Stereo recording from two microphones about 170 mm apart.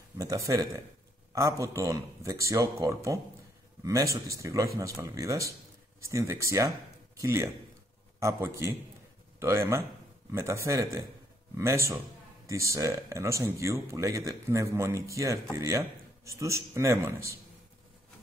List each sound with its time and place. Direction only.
0.2 s speech: 20° right (ahead or behind)